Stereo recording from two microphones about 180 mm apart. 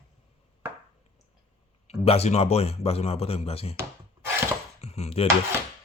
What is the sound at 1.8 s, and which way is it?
Speech, 35° left (ahead or behind).